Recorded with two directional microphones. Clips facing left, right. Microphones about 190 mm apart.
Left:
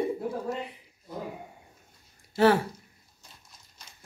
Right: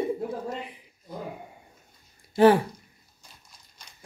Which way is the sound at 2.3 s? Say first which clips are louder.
Right 4 dB; 15° right (ahead or behind).